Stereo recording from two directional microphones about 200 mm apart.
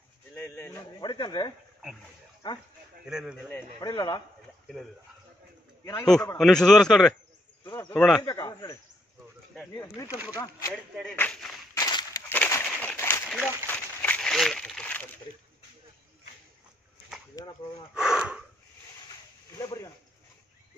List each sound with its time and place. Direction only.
0.3 s speech: 10° left (ahead or behind)
3.1 s a man's voice: 5° right (ahead or behind)
3.8 s speech: 20° left (ahead or behind)
6.0 s a man's voice: 5° left (ahead or behind)
7.6 s speech: 20° left (ahead or behind)
7.9 s a man's voice: 5° left (ahead or behind)
8.2 s speech: 20° left (ahead or behind)
10.0 s speech: 10° right (ahead or behind)
10.3 s speech: 15° left (ahead or behind)
10.7 s speech: 5° left (ahead or behind)
11.8 s walk: 20° left (ahead or behind)
12.4 s a sound: 15° left (ahead or behind)
17.9 s a man's voice: 5° right (ahead or behind)
19.6 s speech: 15° left (ahead or behind)